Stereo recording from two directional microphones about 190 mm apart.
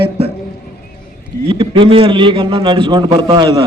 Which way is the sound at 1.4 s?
25° right (ahead or behind).